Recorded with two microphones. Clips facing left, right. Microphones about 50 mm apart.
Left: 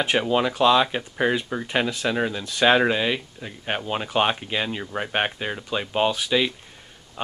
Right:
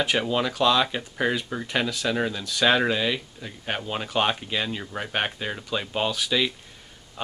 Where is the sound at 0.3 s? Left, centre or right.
Centre.